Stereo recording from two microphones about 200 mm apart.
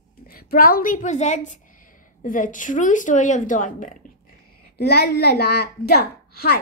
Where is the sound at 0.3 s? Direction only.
50° left (ahead or behind).